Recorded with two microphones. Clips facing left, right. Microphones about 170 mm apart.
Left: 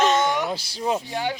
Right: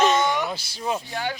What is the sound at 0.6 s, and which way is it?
Speech, 35° left (ahead or behind).